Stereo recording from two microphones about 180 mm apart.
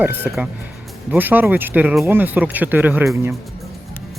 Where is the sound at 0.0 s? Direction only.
10° right (ahead or behind).